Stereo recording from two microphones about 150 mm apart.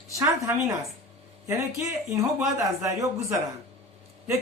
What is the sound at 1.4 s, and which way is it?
Speech, 20° right (ahead or behind).